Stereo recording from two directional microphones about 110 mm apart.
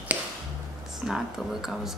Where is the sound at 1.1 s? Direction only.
5° right (ahead or behind).